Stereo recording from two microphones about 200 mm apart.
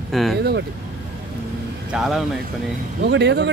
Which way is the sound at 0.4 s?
55° right (ahead or behind).